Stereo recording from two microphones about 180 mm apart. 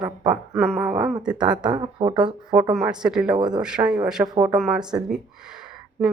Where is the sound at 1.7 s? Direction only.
25° right (ahead or behind).